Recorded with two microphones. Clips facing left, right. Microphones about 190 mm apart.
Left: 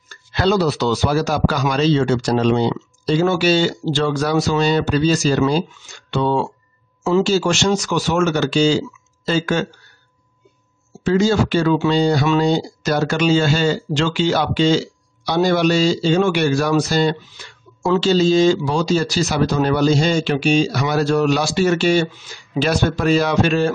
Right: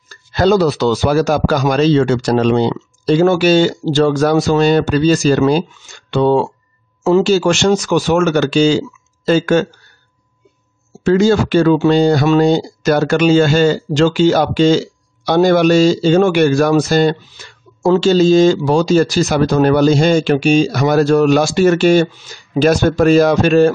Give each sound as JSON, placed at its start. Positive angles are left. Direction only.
{"t": 0.1, "sound": "a sound", "side_deg": -45}
{"t": 0.9, "sound": "speech", "side_deg": -55}
{"t": 11.1, "sound": "speech", "side_deg": -55}